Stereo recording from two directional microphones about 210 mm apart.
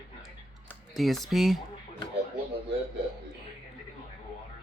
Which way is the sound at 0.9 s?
Centre (ahead or behind).